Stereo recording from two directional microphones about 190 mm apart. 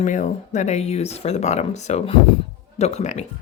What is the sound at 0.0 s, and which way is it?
Speech, 40° left (ahead or behind).